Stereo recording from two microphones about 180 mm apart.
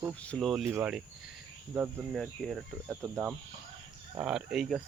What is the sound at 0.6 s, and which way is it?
Speech, 15° right (ahead or behind).